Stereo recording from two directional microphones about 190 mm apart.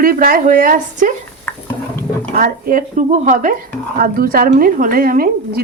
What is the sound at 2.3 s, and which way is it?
A woman's voice, 45° right (ahead or behind).